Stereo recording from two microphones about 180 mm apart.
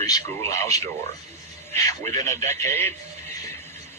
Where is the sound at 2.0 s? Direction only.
40° right (ahead or behind).